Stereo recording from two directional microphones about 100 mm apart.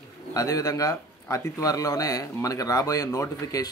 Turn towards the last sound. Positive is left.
turn(degrees=35)  # may be behind; listen again after turning